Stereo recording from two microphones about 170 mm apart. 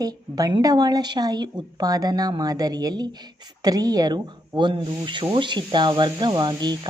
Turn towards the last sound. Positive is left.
turn(degrees=-25)  # may be behind; listen again after turning